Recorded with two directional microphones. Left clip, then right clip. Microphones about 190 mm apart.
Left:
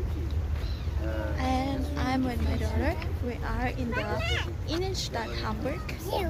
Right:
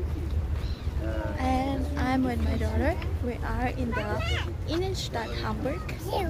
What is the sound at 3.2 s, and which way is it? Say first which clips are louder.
Speech: right 2 dB; 5° right (ahead or behind).